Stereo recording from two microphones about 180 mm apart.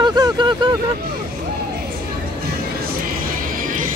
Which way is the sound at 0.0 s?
25° right (ahead or behind).